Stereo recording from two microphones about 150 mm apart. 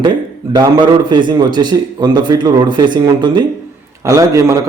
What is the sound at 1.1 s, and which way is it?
A man's voice, 30° right (ahead or behind).